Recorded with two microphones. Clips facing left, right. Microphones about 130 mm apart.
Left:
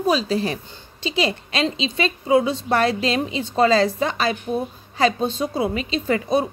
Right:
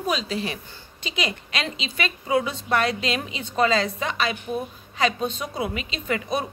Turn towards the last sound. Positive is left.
turn(degrees=30)  # may be behind; listen again after turning